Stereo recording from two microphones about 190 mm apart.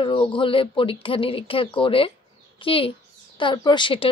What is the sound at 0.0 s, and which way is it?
Speech, 25° left (ahead or behind).